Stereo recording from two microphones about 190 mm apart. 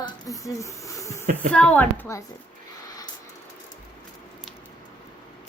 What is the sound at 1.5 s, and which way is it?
Speech, 5° left (ahead or behind).